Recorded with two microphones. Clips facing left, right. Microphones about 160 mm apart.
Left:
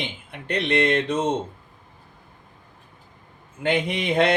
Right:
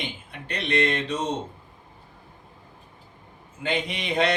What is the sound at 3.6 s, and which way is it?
Speech, 55° left (ahead or behind).